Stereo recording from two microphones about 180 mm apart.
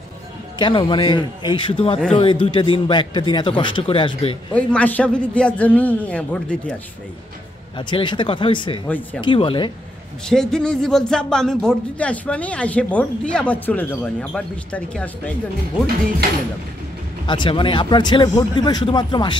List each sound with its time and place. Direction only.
0.6 s a man's voice: 25° left (ahead or behind)
4.6 s a man's voice: 10° left (ahead or behind)
7.7 s a man's voice: 25° left (ahead or behind)
8.8 s a man's voice: 10° left (ahead or behind)
9.2 s a man's voice: 30° left (ahead or behind)
10.2 s speech: 5° left (ahead or behind)
17.3 s a man's voice: 25° left (ahead or behind)